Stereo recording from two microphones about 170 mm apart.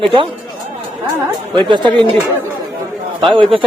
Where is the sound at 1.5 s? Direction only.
30° right (ahead or behind).